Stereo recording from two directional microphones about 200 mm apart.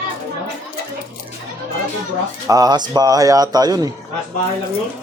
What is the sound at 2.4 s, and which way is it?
A man's voice, 20° right (ahead or behind).